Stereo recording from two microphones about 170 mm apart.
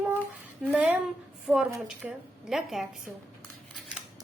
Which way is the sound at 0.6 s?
10° right (ahead or behind).